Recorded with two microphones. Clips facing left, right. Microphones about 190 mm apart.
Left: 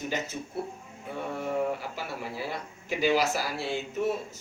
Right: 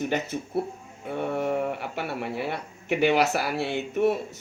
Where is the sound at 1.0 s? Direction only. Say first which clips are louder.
Right 6 dB; 60° right (ahead or behind).